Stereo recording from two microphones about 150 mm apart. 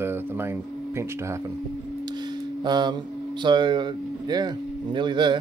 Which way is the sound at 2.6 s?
30° right (ahead or behind).